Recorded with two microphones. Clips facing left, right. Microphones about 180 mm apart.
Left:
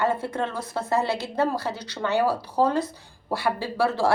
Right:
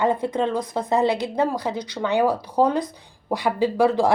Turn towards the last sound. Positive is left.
turn(degrees=-15)  # may be behind; listen again after turning